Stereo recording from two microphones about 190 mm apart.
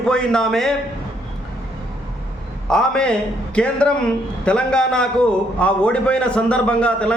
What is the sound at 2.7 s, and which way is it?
A man's voice, 5° left (ahead or behind).